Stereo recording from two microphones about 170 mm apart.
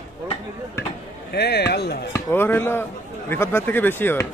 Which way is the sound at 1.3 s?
75° left (ahead or behind).